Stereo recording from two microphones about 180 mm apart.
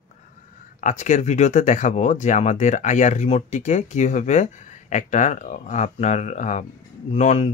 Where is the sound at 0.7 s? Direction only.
40° left (ahead or behind).